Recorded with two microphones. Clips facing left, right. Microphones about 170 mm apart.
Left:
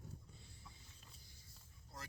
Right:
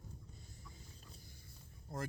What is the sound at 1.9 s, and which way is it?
Speech, 50° right (ahead or behind).